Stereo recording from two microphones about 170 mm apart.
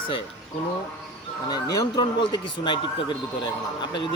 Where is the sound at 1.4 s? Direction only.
25° left (ahead or behind).